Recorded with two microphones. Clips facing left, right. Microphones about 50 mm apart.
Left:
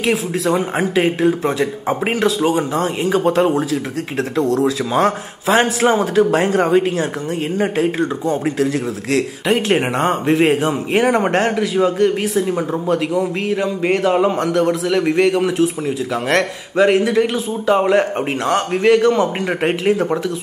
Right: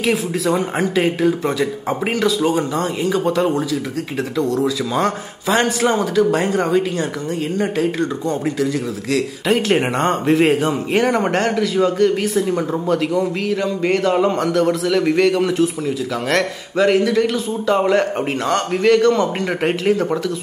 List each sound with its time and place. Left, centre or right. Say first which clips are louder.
0.0 s speech: left 1 dB; centre
0.7 s speech: left 1 dB; centre
4.9 s speech: left 3 dB; centre
6.5 s speech: left 3 dB; left
8.0 s speech: left 2 dB; centre
8.5 s a man's voice: left 2 dB; left
9.5 s speech: even; centre